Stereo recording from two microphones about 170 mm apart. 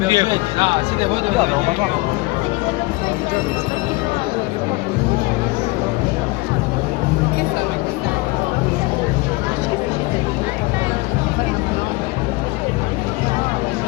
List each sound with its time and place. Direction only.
0.0 s speech: 25° right (ahead or behind)